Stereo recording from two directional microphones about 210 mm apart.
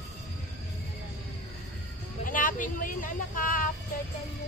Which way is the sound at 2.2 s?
40° left (ahead or behind).